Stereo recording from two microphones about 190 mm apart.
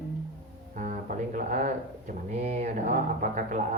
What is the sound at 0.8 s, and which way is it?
Speech, 45° right (ahead or behind).